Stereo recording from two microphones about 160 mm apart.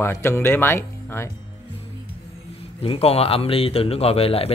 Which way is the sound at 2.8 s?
40° left (ahead or behind).